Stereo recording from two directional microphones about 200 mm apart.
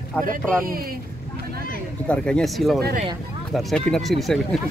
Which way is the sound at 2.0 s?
5° left (ahead or behind).